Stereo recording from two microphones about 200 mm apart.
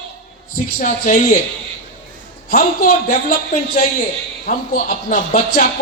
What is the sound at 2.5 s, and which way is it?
Speech, 45° left (ahead or behind).